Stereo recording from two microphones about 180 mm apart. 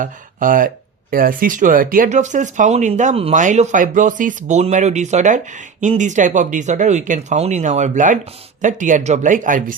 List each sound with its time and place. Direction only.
0.0 s speech: 50° right (ahead or behind)